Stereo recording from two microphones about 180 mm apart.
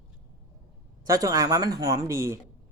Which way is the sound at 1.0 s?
20° right (ahead or behind).